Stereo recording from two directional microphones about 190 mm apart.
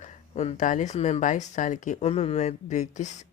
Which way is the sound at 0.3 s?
40° left (ahead or behind).